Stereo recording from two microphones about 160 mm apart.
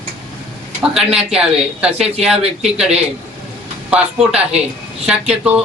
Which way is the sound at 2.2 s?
40° right (ahead or behind).